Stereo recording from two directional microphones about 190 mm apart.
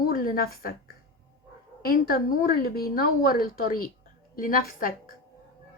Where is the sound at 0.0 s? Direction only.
50° left (ahead or behind).